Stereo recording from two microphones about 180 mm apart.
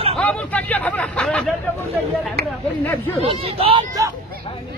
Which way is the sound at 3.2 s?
30° right (ahead or behind).